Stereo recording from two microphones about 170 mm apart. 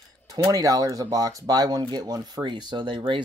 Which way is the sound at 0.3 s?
20° right (ahead or behind).